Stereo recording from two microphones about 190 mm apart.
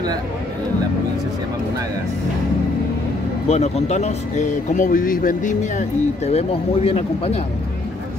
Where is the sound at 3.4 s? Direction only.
35° left (ahead or behind).